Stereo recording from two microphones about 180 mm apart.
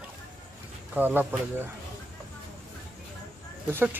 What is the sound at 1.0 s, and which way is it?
Speech, 10° right (ahead or behind).